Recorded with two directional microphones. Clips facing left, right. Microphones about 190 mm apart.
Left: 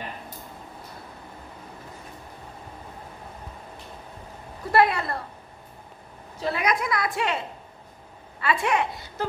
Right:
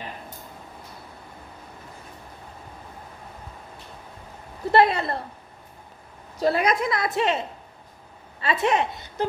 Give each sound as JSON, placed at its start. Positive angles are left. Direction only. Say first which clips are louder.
{"t": 4.7, "sound": "a woman's voice", "louder": "right 2 dB", "side_deg": -25}
{"t": 6.4, "sound": "a woman's voice", "louder": "right 4 dB", "side_deg": -35}